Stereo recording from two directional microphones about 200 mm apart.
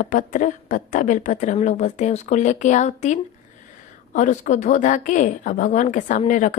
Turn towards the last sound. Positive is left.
turn(degrees=40)  # may be behind; listen again after turning